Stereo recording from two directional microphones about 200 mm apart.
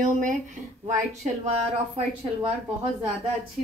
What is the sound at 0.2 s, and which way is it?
Speech, 40° right (ahead or behind).